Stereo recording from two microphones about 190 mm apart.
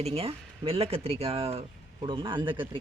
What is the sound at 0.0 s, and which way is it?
Speech, 30° right (ahead or behind).